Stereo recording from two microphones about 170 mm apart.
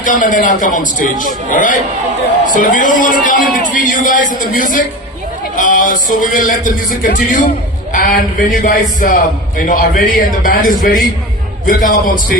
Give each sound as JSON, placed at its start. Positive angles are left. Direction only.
{"t": 0.0, "sound": "a man's voice", "side_deg": 50}